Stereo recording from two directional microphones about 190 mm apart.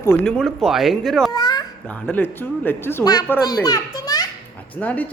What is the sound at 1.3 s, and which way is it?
A child's voice, 20° left (ahead or behind).